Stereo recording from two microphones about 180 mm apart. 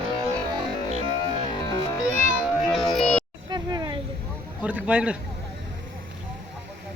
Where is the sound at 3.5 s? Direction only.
25° right (ahead or behind).